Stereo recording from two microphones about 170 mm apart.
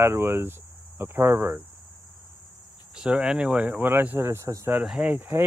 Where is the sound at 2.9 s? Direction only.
5° right (ahead or behind).